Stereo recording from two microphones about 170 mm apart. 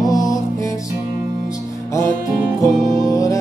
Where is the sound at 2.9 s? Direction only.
20° left (ahead or behind).